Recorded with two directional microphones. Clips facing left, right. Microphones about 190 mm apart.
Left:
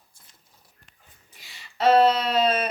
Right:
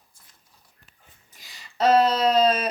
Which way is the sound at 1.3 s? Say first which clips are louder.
Right 3 dB; 40° right (ahead or behind).